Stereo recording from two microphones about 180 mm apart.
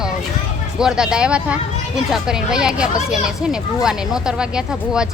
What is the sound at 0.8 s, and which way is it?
Speech, 5° right (ahead or behind).